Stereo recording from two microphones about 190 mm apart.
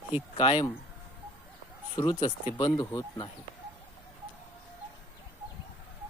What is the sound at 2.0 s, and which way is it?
Speech, 25° left (ahead or behind).